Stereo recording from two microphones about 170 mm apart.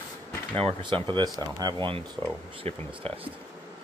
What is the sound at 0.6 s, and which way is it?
Speech, 30° right (ahead or behind).